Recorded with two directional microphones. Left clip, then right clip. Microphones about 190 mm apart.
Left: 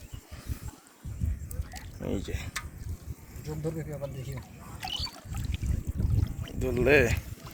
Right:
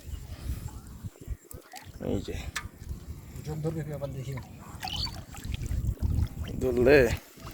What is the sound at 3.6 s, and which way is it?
Speech, 25° left (ahead or behind).